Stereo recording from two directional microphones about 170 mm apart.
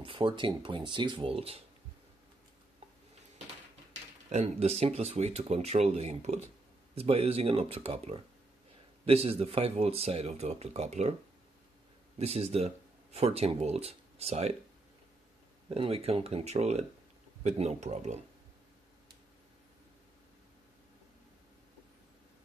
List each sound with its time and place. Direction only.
0.0 s speech: 30° right (ahead or behind)
4.3 s speech: 40° right (ahead or behind)
12.2 s speech: 35° right (ahead or behind)
15.7 s speech: 35° right (ahead or behind)